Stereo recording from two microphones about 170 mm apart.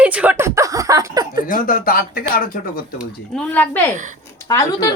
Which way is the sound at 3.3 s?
10° left (ahead or behind).